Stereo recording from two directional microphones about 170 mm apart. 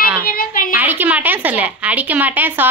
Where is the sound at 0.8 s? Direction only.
10° right (ahead or behind).